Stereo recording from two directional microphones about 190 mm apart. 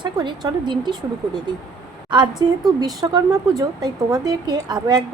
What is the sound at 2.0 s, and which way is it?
Speech, 25° right (ahead or behind).